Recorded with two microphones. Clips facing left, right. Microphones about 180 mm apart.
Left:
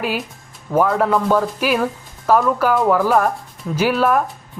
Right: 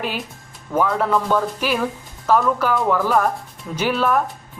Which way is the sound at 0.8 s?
10° left (ahead or behind).